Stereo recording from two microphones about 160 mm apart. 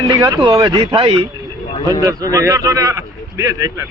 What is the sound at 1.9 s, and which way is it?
A man's voice, 20° right (ahead or behind).